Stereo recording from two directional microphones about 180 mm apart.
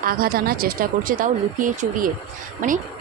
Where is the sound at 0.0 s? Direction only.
55° right (ahead or behind).